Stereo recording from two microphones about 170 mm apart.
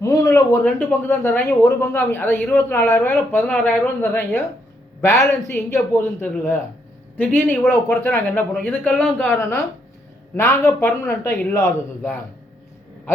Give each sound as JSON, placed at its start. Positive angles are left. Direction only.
{"t": 0.0, "sound": "speech", "side_deg": 20}